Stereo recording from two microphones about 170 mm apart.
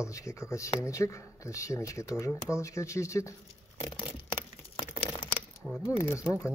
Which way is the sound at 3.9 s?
30° left (ahead or behind).